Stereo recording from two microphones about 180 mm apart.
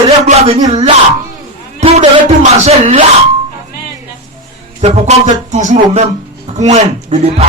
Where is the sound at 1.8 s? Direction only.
35° right (ahead or behind).